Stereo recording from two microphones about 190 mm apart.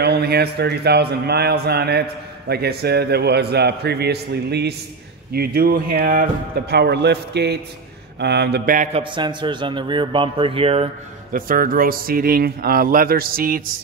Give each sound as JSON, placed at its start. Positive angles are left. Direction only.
{"t": 0.0, "sound": "a man's voice", "side_deg": -60}
{"t": 6.7, "sound": "a man's voice", "side_deg": -60}
{"t": 8.9, "sound": "a man's voice", "side_deg": -25}
{"t": 11.3, "sound": "speech", "side_deg": -50}